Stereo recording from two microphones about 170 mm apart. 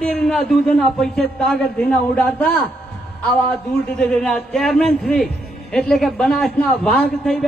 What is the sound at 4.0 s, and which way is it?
A man's voice, 5° left (ahead or behind).